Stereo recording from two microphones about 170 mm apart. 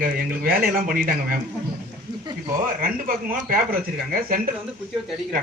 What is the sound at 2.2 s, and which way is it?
Speech, 25° right (ahead or behind).